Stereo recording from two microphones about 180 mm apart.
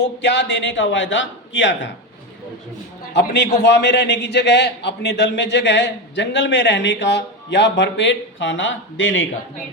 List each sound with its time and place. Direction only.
0.2 s a man's voice: 80° left
3.2 s a man's voice: 70° left (ahead or behind); by 9.2 s 90° left